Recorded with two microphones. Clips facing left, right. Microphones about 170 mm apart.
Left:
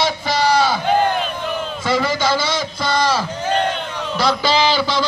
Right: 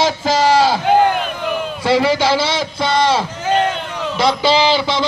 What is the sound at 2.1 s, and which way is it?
A man's voice, 30° right (ahead or behind).